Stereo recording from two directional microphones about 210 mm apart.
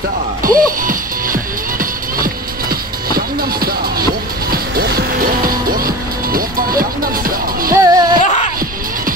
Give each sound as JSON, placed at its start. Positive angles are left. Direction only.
{"t": 0.4, "sound": "music", "side_deg": -40}
{"t": 7.7, "sound": "music", "side_deg": -15}